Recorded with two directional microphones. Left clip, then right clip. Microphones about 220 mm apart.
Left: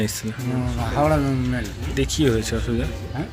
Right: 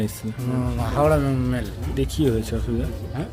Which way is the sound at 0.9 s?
25° right (ahead or behind).